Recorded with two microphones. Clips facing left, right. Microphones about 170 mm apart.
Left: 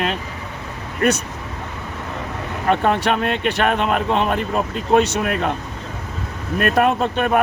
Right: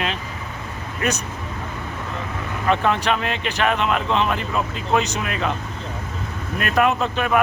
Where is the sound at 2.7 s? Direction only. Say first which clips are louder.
Left 2 dB; 50° left (ahead or behind).